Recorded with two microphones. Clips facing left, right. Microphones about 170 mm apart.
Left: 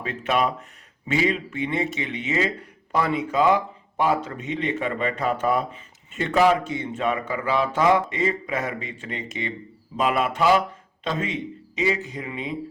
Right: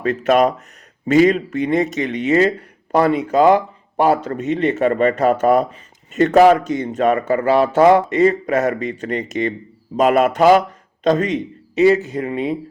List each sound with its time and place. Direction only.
0.0 s a man's voice: 45° right (ahead or behind)
2.2 s a man's voice: 60° right (ahead or behind); by 11.3 s 40° right (ahead or behind)
12.1 s speech: 55° right (ahead or behind)